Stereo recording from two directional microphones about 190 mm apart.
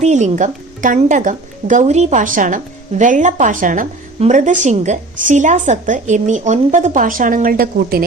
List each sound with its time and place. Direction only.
0.0 s a woman's voice: 40° right (ahead or behind)